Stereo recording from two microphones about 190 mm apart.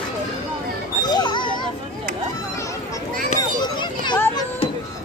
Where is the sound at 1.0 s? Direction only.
25° left (ahead or behind).